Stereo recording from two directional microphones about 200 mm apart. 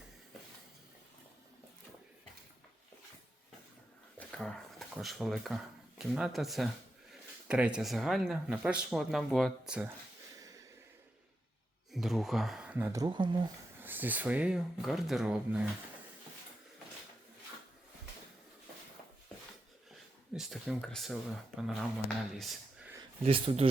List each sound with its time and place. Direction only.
4.2 s speech: 5° left (ahead or behind)
11.9 s speech: centre (ahead or behind); by 13.5 s 25° right (ahead or behind)
13.7 s speech: 10° right (ahead or behind)
20.3 s speech: centre (ahead or behind)
23.2 s speech: 30° right (ahead or behind)